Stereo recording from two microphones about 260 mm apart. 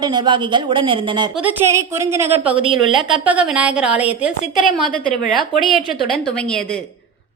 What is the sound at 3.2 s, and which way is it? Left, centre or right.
A woman's voice, centre.